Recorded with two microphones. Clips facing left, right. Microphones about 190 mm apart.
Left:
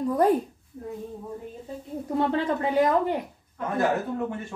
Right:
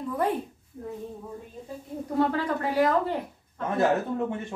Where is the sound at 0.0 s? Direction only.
40° left (ahead or behind).